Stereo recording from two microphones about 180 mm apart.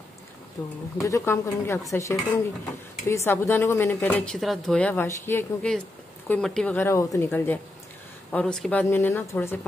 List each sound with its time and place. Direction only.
0.9 s speech: 15° left (ahead or behind)